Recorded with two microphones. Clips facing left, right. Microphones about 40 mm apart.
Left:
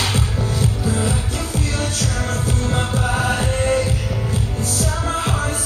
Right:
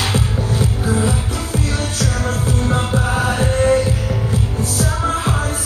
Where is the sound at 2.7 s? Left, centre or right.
Right.